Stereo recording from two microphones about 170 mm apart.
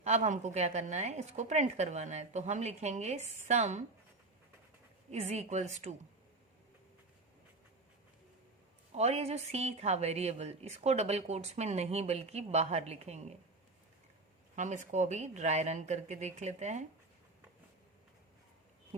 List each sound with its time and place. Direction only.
0.0 s a woman's voice: 40° right (ahead or behind)
5.2 s a woman's voice: 40° right (ahead or behind)
8.9 s a woman's voice: 40° right (ahead or behind)
14.5 s speech: 45° right (ahead or behind)